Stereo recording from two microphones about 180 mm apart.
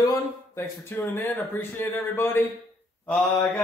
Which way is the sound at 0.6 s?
15° left (ahead or behind).